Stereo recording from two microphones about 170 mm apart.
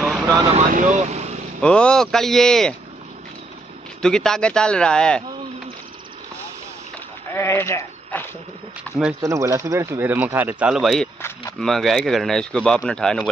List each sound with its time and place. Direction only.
0.0 s vehicle: 5° right (ahead or behind)
0.5 s speech: 45° right (ahead or behind)
1.6 s speech: 5° left (ahead or behind)
4.0 s speech: 5° left (ahead or behind)
7.3 s speech: 15° left (ahead or behind)
9.2 s speech: 20° right (ahead or behind); by 11.1 s centre (ahead or behind)
11.1 s speech: 15° left (ahead or behind)
11.6 s speech: centre (ahead or behind)